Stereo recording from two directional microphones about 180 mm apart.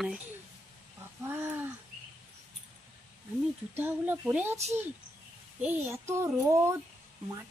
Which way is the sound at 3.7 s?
10° right (ahead or behind).